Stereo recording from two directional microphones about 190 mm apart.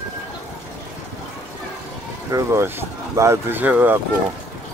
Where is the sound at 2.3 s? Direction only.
15° right (ahead or behind).